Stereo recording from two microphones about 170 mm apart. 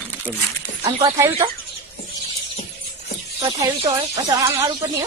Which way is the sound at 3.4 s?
20° right (ahead or behind).